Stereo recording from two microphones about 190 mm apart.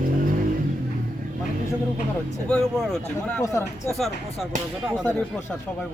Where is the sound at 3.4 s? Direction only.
15° left (ahead or behind).